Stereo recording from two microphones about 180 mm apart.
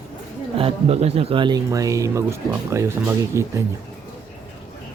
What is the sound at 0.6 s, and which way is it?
Speech, 35° right (ahead or behind).